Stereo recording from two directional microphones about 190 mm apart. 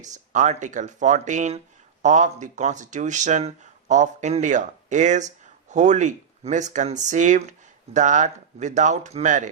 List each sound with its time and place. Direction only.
0.0 s speech: 40° right (ahead or behind)